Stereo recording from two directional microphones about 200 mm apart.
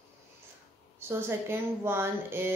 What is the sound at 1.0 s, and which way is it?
A woman's voice, 10° right (ahead or behind).